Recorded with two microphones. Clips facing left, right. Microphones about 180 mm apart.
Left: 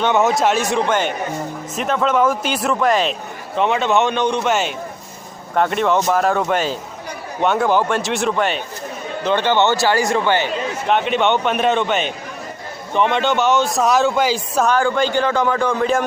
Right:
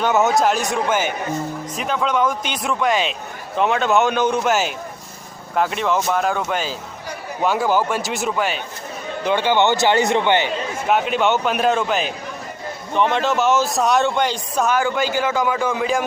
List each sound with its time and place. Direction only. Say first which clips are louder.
0.0 s a man's voice: left 1 dB; centre (ahead or behind); by 10.5 s 20° right (ahead or behind)
10.8 s a man's voice: left 1 dB; 5° right (ahead or behind)
14.7 s a man's voice: left 3 dB; 10° right (ahead or behind)